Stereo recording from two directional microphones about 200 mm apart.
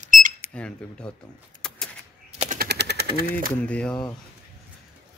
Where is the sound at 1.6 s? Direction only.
5° left (ahead or behind).